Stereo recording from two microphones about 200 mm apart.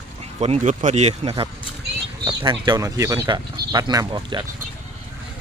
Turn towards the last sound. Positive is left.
turn(degrees=-20)  # may be behind; listen again after turning